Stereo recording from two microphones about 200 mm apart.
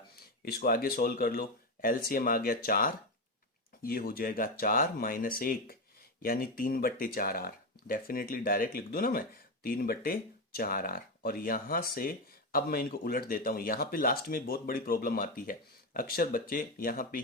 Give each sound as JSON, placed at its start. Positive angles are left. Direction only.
{"t": 0.4, "sound": "speech", "side_deg": 50}